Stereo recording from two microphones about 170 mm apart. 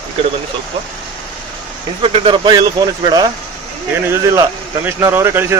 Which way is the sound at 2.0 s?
30° right (ahead or behind).